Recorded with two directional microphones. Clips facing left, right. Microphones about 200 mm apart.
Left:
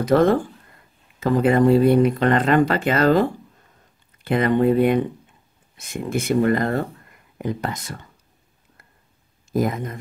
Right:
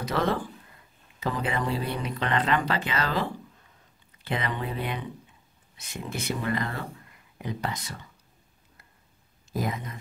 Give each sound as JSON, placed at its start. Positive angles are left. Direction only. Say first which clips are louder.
{"t": 0.0, "sound": "speech", "louder": "left 11 dB", "side_deg": 50}
{"t": 9.5, "sound": "speech", "louder": "left 9 dB", "side_deg": 50}